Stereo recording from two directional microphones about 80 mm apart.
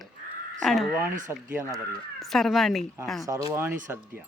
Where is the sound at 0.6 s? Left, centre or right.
Centre.